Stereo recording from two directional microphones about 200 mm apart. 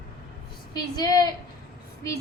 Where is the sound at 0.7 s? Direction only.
20° left (ahead or behind).